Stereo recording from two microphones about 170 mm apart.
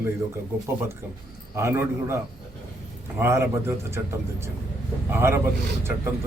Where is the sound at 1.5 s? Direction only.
15° right (ahead or behind).